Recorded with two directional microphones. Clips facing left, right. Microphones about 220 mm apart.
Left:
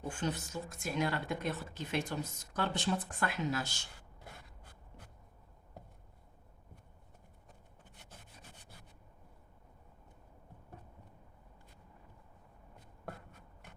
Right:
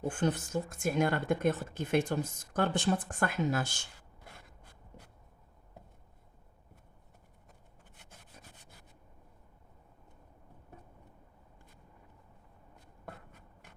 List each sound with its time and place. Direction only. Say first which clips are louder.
0.1 s speech: right 5 dB; 50° right (ahead or behind)